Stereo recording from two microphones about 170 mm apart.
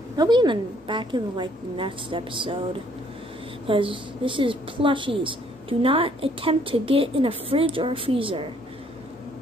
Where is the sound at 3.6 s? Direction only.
30° right (ahead or behind).